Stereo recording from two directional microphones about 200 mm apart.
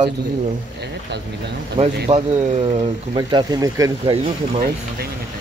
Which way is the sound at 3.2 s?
20° right (ahead or behind).